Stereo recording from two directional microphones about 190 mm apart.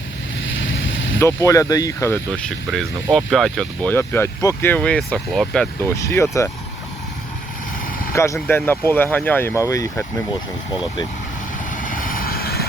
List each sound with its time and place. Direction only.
0.4 s vehicle: 75° left (ahead or behind)
1.2 s speech: 15° left (ahead or behind)
6.0 s speech: 15° left (ahead or behind)
8.1 s speech: 15° left (ahead or behind)
11.7 s vehicle: 45° left (ahead or behind)